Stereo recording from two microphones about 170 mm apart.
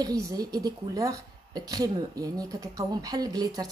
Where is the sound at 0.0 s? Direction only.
20° right (ahead or behind).